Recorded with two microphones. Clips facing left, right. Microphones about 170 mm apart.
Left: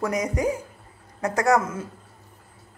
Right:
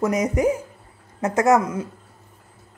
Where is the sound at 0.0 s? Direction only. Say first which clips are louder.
Right 4 dB; 20° right (ahead or behind).